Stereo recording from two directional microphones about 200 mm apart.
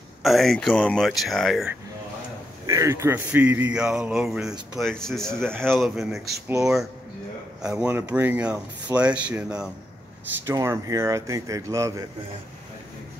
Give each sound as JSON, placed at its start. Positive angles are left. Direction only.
{"t": 0.2, "sound": "speech", "side_deg": 0}
{"t": 2.6, "sound": "speech", "side_deg": -15}